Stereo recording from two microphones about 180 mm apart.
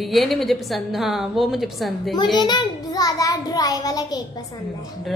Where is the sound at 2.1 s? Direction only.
25° left (ahead or behind).